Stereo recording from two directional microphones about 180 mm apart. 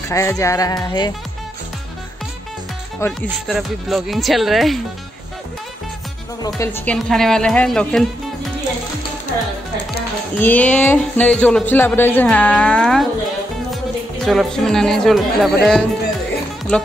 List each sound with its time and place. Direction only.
0.1 s speech: 15° left (ahead or behind)
3.0 s speech: 15° left (ahead or behind)
3.4 s speech: centre (ahead or behind)
6.4 s speech: 15° left (ahead or behind)
7.0 s speech: centre (ahead or behind)
10.4 s speech: 10° left (ahead or behind)
14.2 s speech: centre (ahead or behind)